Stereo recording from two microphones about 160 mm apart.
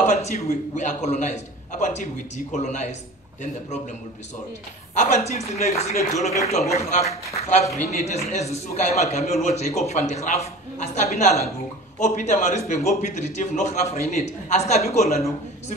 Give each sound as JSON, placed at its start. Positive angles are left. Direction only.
{"t": 0.0, "sound": "a man's voice", "side_deg": 45}
{"t": 4.9, "sound": "a man's voice", "side_deg": 50}